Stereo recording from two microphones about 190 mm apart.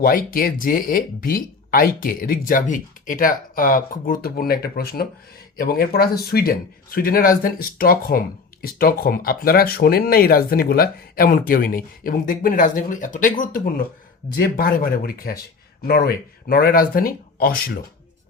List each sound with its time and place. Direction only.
0.0 s speech: 50° left (ahead or behind)